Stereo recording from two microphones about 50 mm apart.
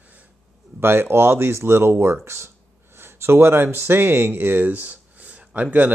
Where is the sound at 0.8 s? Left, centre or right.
Right.